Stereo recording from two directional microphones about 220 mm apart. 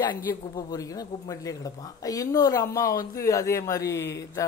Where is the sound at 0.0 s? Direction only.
15° left (ahead or behind).